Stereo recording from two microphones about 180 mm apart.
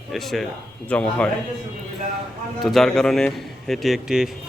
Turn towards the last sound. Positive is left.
turn(degrees=0)  # may be behind; listen again after turning